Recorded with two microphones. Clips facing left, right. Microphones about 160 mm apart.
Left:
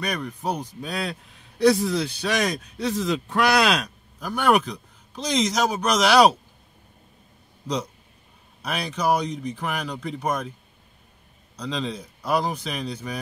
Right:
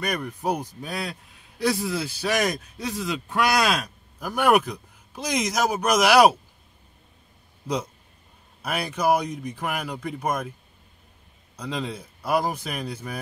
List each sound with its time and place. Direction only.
0.0 s a man's voice: 10° right (ahead or behind)
7.6 s speech: 10° right (ahead or behind)
9.3 s speech: 55° right (ahead or behind)
9.6 s speech: 5° right (ahead or behind)
11.5 s speech: 10° right (ahead or behind)